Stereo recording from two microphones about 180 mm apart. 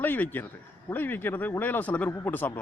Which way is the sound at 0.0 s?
10° left (ahead or behind).